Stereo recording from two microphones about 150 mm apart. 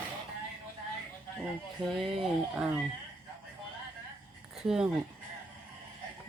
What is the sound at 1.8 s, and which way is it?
Speech, centre (ahead or behind).